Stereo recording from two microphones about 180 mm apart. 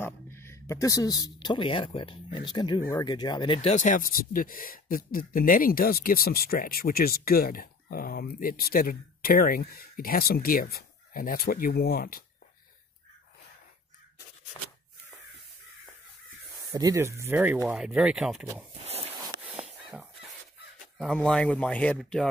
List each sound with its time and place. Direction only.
0.0 s speech: 15° left (ahead or behind)
3.7 s speech: 45° left (ahead or behind)
16.7 s speech: 20° right (ahead or behind)
21.0 s speech: 5° left (ahead or behind)